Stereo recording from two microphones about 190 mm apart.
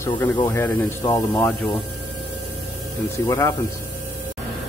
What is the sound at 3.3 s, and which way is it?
Speech, 15° left (ahead or behind).